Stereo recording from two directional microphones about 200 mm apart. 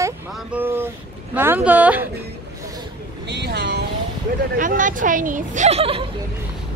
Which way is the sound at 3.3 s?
60° right (ahead or behind).